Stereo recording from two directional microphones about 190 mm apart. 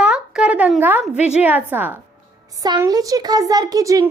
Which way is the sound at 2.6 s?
20° right (ahead or behind).